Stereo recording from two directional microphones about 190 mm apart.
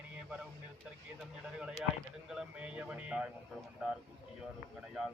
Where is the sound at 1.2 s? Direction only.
5° right (ahead or behind).